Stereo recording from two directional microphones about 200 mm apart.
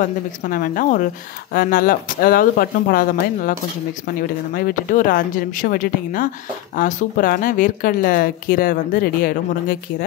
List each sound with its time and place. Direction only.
0.0 s a woman's voice: 40° left (ahead or behind)
4.6 s speech: 45° left (ahead or behind)